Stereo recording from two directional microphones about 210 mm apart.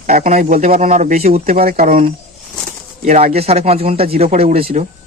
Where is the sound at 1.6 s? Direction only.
40° right (ahead or behind).